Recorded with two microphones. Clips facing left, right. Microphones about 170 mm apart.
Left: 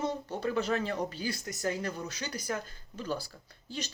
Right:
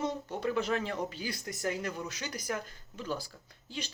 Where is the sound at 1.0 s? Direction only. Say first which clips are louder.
Left 1 dB; 40° left (ahead or behind).